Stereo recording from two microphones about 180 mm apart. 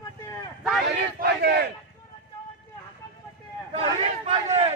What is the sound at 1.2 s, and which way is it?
Battle cry, 65° right (ahead or behind).